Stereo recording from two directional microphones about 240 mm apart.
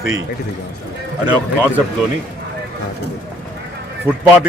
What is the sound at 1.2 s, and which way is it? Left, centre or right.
Speech, centre.